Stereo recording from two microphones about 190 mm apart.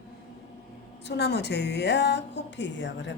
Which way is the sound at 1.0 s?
60° left (ahead or behind).